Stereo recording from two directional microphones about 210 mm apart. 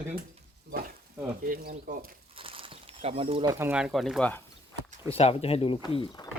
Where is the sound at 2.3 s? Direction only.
25° right (ahead or behind).